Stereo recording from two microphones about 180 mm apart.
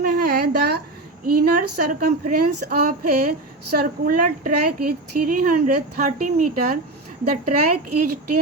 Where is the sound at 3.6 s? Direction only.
55° right (ahead or behind).